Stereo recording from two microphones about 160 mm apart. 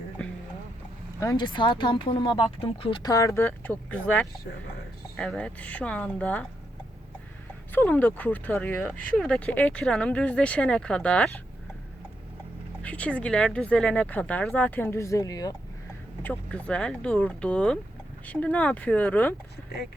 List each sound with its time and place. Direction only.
1.2 s speech: 25° left (ahead or behind); by 6.4 s 10° left (ahead or behind)
7.7 s speech: 10° left (ahead or behind)
12.8 s speech: 10° left (ahead or behind); by 15.5 s 25° left (ahead or behind)
16.2 s speech: 10° left (ahead or behind)